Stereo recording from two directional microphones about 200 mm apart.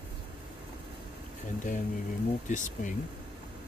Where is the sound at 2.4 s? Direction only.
40° left (ahead or behind).